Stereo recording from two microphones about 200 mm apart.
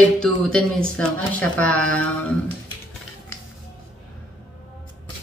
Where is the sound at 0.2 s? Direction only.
5° left (ahead or behind).